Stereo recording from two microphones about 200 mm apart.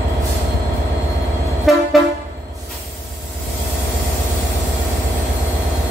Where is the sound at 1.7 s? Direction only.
Centre (ahead or behind).